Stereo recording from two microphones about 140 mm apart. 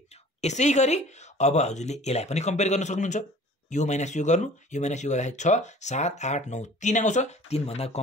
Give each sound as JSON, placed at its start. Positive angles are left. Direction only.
{"t": 0.1, "sound": "speech", "side_deg": 55}